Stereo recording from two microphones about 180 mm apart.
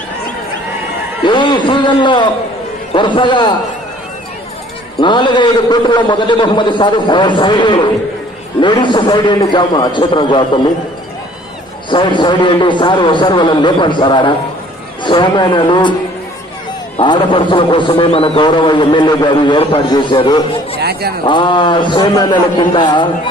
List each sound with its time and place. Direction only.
1.2 s a man's voice: 25° left (ahead or behind)
5.0 s a man's voice: 25° left (ahead or behind)
11.9 s a man's voice: 25° left (ahead or behind)
16.9 s a man's voice: 25° left (ahead or behind)
20.8 s speech: 60° right (ahead or behind)
21.3 s a man's voice: 25° left (ahead or behind)